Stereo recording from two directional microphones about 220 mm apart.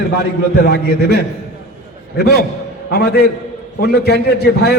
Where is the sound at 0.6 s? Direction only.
45° left (ahead or behind).